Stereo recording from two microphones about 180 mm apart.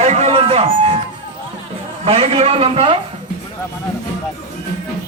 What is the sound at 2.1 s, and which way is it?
Speech, 35° right (ahead or behind).